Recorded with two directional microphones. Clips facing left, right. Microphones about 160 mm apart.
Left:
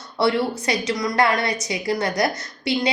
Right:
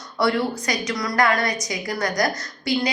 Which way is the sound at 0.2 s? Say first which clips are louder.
Left 1 dB; 25° left (ahead or behind).